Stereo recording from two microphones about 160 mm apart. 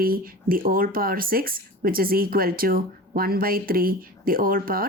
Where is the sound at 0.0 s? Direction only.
65° right (ahead or behind).